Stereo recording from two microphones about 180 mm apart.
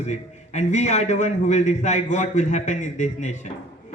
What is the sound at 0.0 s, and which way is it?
A man's voice, 40° left (ahead or behind).